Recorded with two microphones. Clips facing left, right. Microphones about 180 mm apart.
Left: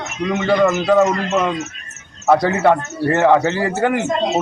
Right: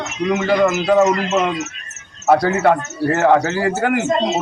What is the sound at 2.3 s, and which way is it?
Speech, centre (ahead or behind).